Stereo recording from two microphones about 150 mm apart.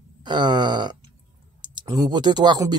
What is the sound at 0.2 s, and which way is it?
Speech, 30° right (ahead or behind).